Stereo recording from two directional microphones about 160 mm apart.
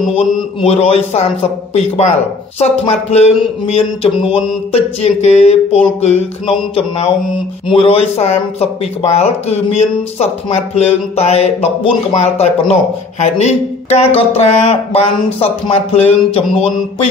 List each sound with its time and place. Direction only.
0.1 s speech: 40° left (ahead or behind)